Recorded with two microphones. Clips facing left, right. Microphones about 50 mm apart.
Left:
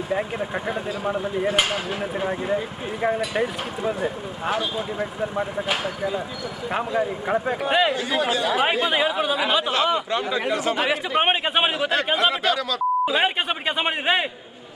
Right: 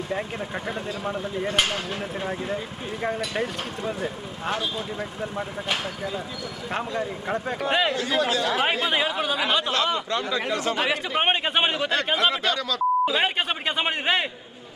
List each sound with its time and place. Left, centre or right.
0.1 s speech: centre
8.5 s a man's voice: centre
10.8 s a man's voice: centre